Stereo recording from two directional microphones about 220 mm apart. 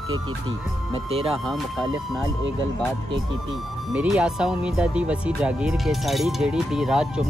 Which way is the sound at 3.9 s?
5° right (ahead or behind).